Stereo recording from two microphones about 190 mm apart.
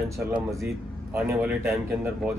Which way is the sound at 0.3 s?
15° right (ahead or behind).